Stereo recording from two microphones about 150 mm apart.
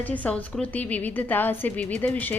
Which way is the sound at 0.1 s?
10° left (ahead or behind).